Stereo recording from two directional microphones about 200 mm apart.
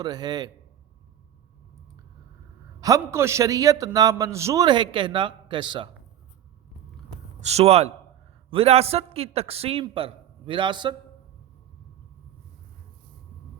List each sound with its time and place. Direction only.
0.0 s a man's voice: 20° right (ahead or behind)
2.8 s a man's voice: 15° right (ahead or behind)
7.4 s a man's voice: 30° right (ahead or behind)